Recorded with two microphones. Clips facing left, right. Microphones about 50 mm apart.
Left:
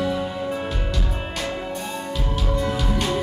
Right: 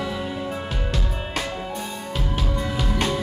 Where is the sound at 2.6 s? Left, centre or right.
Centre.